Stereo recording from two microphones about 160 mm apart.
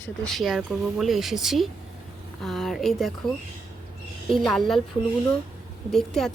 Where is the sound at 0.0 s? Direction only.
Centre (ahead or behind).